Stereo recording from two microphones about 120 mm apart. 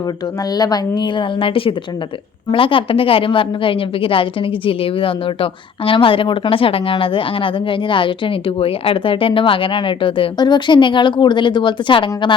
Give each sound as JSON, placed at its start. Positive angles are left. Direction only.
{"t": 0.5, "sound": "a woman's voice", "side_deg": 35}